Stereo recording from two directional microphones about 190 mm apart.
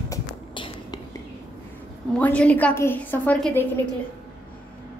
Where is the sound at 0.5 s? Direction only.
25° left (ahead or behind).